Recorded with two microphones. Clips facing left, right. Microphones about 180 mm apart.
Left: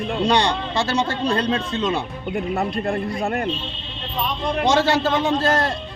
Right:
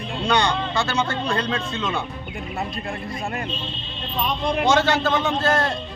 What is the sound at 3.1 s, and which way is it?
Speech, 60° left (ahead or behind).